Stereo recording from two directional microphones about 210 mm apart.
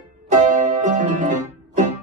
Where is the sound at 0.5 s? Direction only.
35° right (ahead or behind).